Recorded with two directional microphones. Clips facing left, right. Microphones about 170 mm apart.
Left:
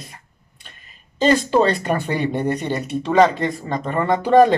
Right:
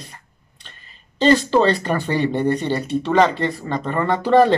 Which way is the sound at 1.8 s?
10° left (ahead or behind).